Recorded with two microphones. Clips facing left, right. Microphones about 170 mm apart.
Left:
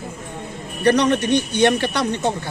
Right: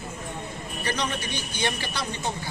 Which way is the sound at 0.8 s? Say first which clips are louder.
Left 14 dB; 65° left (ahead or behind).